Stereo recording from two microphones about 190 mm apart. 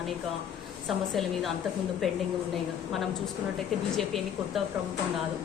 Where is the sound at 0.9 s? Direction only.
Centre (ahead or behind).